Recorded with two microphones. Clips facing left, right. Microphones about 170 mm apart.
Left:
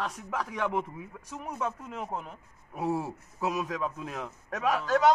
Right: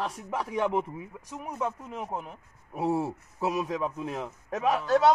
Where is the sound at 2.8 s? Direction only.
25° right (ahead or behind).